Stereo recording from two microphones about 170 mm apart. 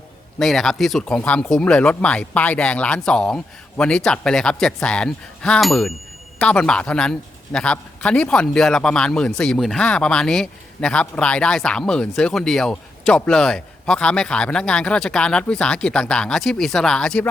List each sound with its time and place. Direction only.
0.3 s a man's voice: centre (ahead or behind)